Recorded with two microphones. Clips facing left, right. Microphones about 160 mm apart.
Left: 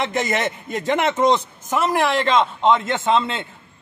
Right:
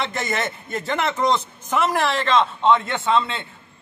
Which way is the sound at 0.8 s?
15° left (ahead or behind).